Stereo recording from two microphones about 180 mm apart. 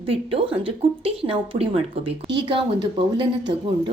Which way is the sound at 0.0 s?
30° right (ahead or behind).